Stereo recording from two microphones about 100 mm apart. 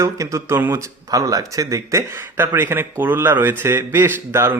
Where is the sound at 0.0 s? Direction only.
30° right (ahead or behind).